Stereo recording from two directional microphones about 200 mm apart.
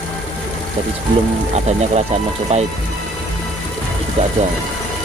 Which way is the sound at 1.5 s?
35° right (ahead or behind).